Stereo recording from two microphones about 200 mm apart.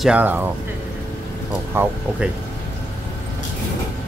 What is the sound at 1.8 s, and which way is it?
Speech, 10° right (ahead or behind).